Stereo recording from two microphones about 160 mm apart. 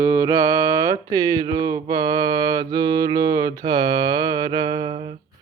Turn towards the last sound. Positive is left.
turn(degrees=-35)  # may be behind; listen again after turning